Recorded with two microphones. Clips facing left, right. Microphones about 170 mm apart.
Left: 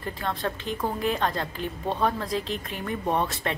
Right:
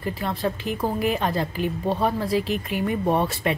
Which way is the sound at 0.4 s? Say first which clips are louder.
Right 4 dB; 10° right (ahead or behind).